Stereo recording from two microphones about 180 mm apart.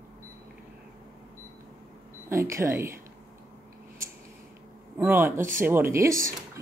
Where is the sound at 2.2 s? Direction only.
15° right (ahead or behind).